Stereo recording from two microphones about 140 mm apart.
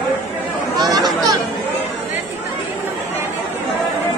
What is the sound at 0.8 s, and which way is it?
Chatter, 30° right (ahead or behind).